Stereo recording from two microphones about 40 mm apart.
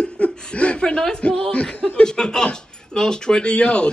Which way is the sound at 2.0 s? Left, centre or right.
Centre.